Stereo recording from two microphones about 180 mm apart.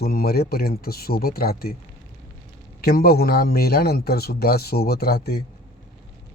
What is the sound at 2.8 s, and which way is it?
Speech, 60° left (ahead or behind).